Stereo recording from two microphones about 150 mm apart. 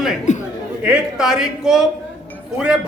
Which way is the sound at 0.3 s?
55° left (ahead or behind).